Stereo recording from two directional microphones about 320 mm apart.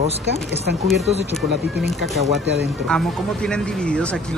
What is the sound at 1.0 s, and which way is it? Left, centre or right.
Speech, centre.